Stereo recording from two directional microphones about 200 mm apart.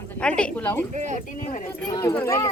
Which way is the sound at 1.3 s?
40° left (ahead or behind).